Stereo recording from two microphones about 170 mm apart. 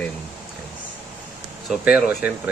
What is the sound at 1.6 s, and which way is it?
Speech, 5° right (ahead or behind).